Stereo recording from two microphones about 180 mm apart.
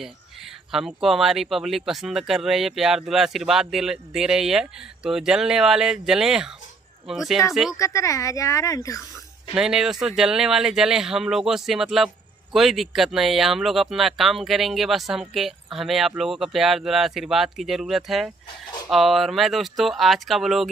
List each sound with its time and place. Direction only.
0.0 s speech: centre (ahead or behind)
7.7 s speech: 20° left (ahead or behind)
9.5 s speech: 5° right (ahead or behind)